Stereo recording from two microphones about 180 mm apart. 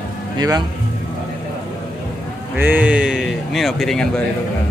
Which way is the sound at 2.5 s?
10° right (ahead or behind).